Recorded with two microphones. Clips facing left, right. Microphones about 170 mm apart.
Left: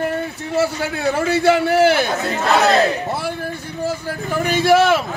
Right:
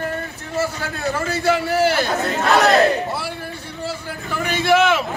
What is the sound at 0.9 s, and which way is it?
A man's voice, 60° left (ahead or behind).